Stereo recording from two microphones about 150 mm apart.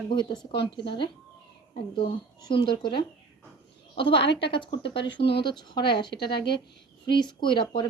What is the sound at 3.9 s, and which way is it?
A woman's voice, 35° left (ahead or behind).